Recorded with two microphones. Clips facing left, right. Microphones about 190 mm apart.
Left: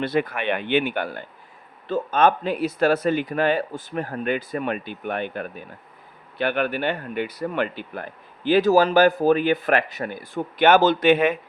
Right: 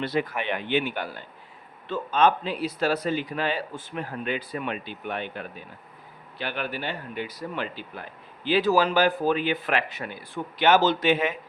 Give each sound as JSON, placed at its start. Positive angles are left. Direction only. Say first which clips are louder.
{"t": 0.0, "sound": "speech", "louder": "left 4 dB", "side_deg": 60}
{"t": 8.4, "sound": "speech", "louder": "left 5 dB", "side_deg": 45}